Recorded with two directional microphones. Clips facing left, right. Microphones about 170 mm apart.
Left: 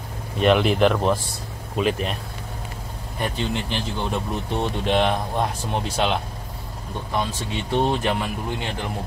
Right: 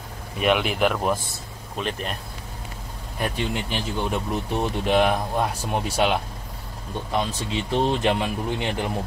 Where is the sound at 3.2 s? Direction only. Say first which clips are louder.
Left 1 dB; 10° right (ahead or behind).